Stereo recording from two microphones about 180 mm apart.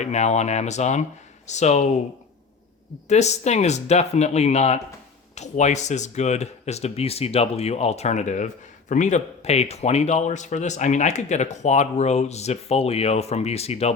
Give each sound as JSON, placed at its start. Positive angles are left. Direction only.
{"t": 0.0, "sound": "speech", "side_deg": 40}
{"t": 3.1, "sound": "speech", "side_deg": 40}